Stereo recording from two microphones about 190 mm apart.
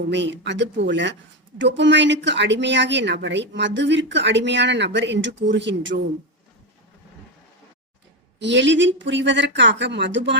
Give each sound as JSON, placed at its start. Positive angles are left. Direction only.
{"t": 0.1, "sound": "speech", "side_deg": -70}
{"t": 8.4, "sound": "speech", "side_deg": -70}